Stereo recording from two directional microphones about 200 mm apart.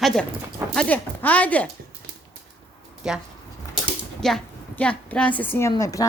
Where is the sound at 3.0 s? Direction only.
5° right (ahead or behind); by 6.0 s 15° left (ahead or behind).